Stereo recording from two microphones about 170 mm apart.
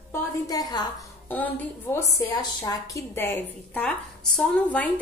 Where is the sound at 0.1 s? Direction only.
20° left (ahead or behind).